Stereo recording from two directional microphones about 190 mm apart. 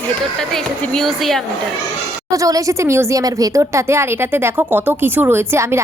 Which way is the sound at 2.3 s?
15° right (ahead or behind).